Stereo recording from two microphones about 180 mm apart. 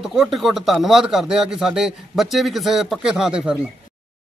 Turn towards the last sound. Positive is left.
turn(degrees=-5)  # may be behind; listen again after turning